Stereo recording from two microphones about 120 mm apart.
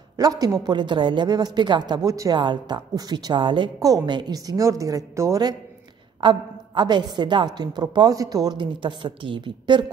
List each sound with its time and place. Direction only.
0.2 s a woman's voice: 30° right (ahead or behind)